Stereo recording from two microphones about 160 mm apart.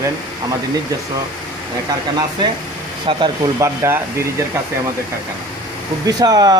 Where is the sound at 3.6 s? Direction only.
15° right (ahead or behind).